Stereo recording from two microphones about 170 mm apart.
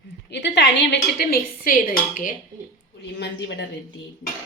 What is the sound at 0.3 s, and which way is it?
Speech, 90° left.